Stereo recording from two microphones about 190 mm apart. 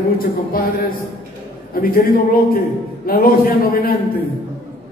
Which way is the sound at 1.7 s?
50° left (ahead or behind).